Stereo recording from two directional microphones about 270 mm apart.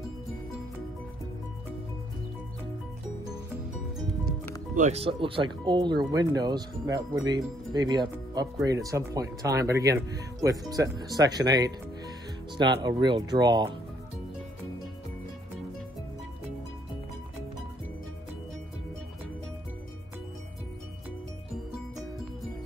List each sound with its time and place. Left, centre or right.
4.7 s speech: right
12.8 s speech: centre